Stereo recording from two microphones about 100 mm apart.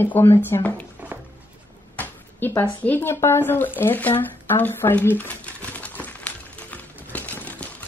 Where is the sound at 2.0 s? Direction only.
20° left (ahead or behind).